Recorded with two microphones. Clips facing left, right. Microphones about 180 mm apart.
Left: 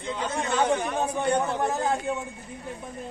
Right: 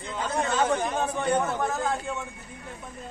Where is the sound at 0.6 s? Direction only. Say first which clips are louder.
Left 3 dB; 15° left (ahead or behind).